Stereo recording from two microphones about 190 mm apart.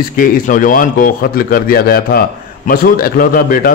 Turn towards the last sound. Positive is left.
turn(degrees=50)  # may be behind; listen again after turning